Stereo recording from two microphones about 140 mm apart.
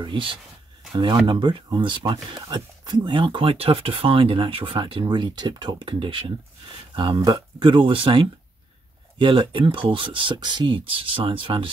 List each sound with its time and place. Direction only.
0.0 s speech: 35° right (ahead or behind)